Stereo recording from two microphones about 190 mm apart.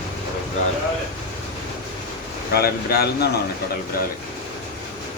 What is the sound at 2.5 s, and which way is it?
Speech, 55° left (ahead or behind).